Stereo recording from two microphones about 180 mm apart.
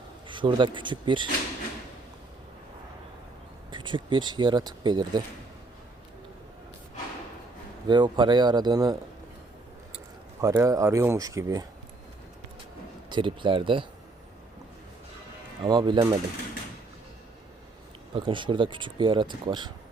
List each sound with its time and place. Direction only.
0.3 s speech: 25° right (ahead or behind)
3.7 s speech: 25° right (ahead or behind)
7.9 s speech: 25° right (ahead or behind)
10.4 s speech: 20° right (ahead or behind)
13.1 s speech: 25° right (ahead or behind)
15.6 s speech: 25° right (ahead or behind)
18.1 s speech: 25° right (ahead or behind)